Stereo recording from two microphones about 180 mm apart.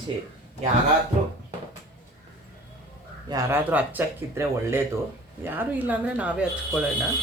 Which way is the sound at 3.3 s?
20° right (ahead or behind).